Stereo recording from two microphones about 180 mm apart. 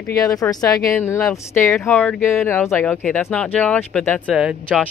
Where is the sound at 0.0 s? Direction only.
20° left (ahead or behind).